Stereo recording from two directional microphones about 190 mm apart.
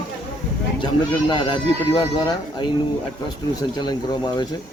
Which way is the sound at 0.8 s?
25° left (ahead or behind).